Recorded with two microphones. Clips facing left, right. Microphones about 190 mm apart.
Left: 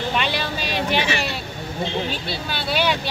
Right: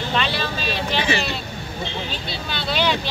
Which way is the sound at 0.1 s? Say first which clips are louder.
Even; 10° left (ahead or behind).